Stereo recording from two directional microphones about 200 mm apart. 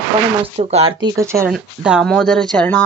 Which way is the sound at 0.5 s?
30° right (ahead or behind).